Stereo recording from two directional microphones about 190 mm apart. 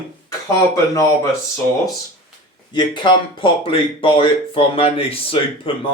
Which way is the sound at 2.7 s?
25° left (ahead or behind).